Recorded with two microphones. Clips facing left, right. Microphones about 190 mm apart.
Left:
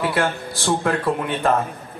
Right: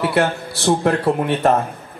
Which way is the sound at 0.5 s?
70° right (ahead or behind).